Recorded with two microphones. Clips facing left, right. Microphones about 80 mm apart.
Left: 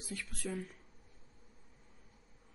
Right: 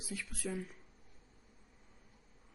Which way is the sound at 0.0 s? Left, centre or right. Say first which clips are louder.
Even; centre.